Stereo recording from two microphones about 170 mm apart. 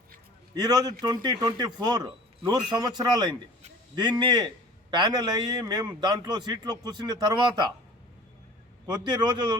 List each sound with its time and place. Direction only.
0.5 s a man's voice: 25° right (ahead or behind)
8.9 s a man's voice: 25° right (ahead or behind)